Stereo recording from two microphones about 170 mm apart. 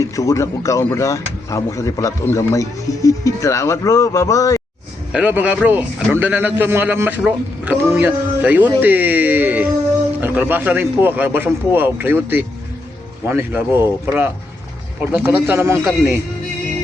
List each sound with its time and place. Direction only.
0.0 s speech: 20° left (ahead or behind)
5.1 s a man's voice: 10° right (ahead or behind)